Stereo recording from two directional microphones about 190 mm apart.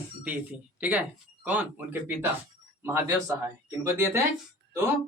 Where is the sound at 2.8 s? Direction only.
15° right (ahead or behind).